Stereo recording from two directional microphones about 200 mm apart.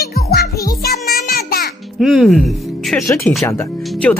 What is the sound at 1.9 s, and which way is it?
Speech, centre (ahead or behind).